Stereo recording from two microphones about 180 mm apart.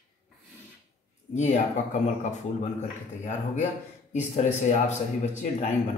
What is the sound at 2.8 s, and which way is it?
A man's voice, 40° left (ahead or behind).